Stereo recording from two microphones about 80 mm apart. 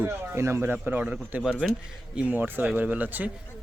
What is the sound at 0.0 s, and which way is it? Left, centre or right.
A man's voice, right.